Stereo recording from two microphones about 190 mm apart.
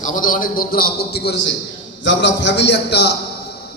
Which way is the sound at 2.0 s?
70° left (ahead or behind).